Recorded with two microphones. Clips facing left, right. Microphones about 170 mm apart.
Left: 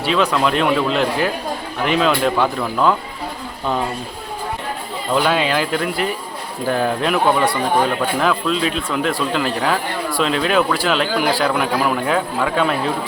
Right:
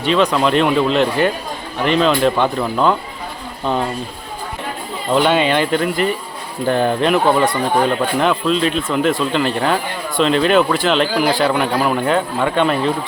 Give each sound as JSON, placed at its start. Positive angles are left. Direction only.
{"t": 0.0, "sound": "a man's voice", "side_deg": 0}
{"t": 5.1, "sound": "a man's voice", "side_deg": 0}